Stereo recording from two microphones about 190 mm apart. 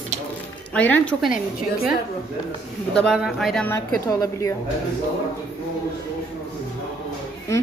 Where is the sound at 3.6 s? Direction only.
15° left (ahead or behind).